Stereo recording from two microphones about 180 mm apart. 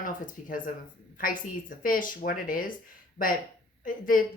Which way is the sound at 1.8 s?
50° left (ahead or behind).